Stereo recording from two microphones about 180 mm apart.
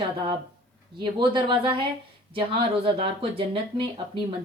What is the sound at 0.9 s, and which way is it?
Speech, 25° right (ahead or behind).